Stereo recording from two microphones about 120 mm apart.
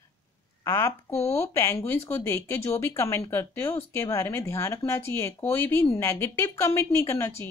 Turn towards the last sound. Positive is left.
turn(degrees=20)  # may be behind; listen again after turning